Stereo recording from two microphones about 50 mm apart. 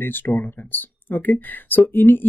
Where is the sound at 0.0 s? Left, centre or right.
Left.